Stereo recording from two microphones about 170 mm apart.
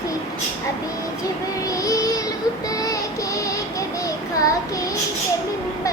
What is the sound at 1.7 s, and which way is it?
Child singing, 20° left (ahead or behind).